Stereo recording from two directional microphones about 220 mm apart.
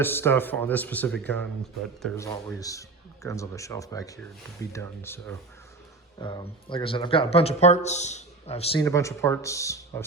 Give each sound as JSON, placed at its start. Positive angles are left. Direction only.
{"t": 0.0, "sound": "speech", "side_deg": 10}
{"t": 2.1, "sound": "speech", "side_deg": 15}
{"t": 8.8, "sound": "speech", "side_deg": 15}